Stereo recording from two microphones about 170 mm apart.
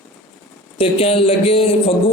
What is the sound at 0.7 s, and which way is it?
A man's voice, 35° left (ahead or behind).